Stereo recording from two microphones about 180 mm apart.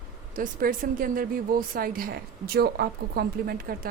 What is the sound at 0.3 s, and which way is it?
A woman's voice, 50° right (ahead or behind).